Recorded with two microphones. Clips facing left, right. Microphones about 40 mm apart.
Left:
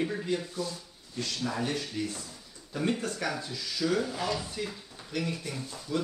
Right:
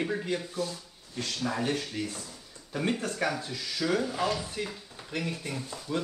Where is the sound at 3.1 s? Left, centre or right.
Right.